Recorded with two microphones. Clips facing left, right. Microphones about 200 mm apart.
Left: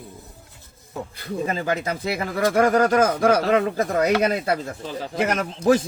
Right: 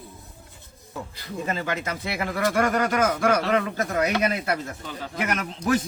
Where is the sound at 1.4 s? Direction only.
35° left (ahead or behind).